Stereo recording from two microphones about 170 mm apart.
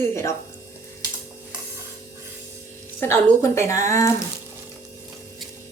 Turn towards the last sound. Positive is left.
turn(degrees=20)  # may be behind; listen again after turning